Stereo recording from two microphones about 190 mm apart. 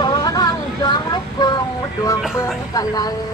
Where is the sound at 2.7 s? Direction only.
20° left (ahead or behind).